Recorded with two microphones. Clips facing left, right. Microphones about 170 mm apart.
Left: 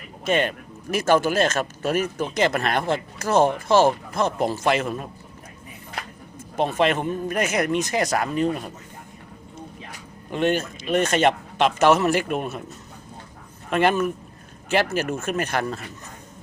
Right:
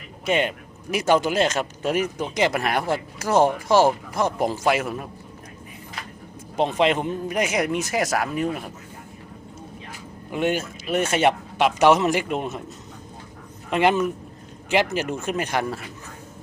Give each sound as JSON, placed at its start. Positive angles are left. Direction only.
{"t": 0.3, "sound": "speech", "side_deg": -15}
{"t": 6.6, "sound": "speech", "side_deg": -15}
{"t": 10.3, "sound": "speech", "side_deg": -10}
{"t": 13.7, "sound": "speech", "side_deg": -15}